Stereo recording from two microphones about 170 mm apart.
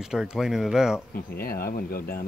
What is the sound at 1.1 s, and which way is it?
Speech, 60° left (ahead or behind).